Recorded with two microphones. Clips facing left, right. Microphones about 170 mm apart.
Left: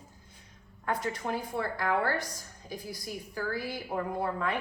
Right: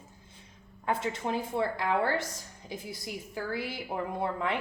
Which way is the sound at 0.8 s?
25° right (ahead or behind).